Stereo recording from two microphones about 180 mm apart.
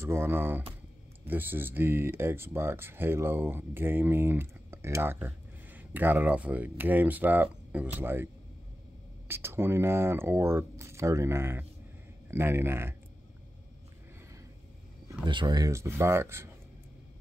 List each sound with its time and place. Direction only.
0.0 s speech: 15° right (ahead or behind)
9.3 s speech: 15° right (ahead or behind)
15.2 s speech: 25° right (ahead or behind)